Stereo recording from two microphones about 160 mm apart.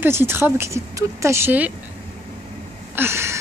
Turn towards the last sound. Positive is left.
turn(degrees=-15)  # may be behind; listen again after turning